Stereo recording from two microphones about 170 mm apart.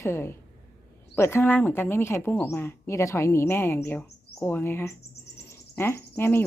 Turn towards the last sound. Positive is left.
turn(degrees=10)  # may be behind; listen again after turning